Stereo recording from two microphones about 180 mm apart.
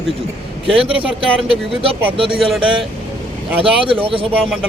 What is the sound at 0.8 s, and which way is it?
A man's voice, 30° right (ahead or behind).